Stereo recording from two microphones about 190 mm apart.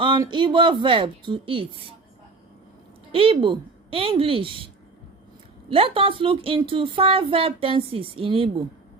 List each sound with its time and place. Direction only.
0.0 s a woman's voice: 25° right (ahead or behind)
3.1 s a woman's voice: 30° right (ahead or behind)